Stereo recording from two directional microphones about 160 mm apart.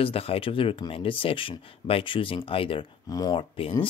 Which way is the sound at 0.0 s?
35° left (ahead or behind).